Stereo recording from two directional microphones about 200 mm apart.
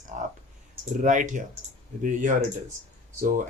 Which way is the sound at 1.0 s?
40° right (ahead or behind).